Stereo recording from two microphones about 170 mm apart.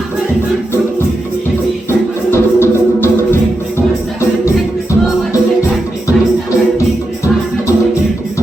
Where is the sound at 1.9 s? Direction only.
15° left (ahead or behind).